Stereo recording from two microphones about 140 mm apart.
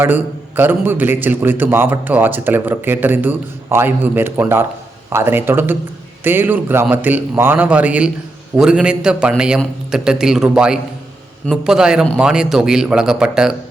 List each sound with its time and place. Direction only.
0.0 s a man's voice: 15° right (ahead or behind)